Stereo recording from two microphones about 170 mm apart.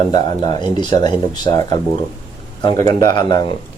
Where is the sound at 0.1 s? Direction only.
25° left (ahead or behind).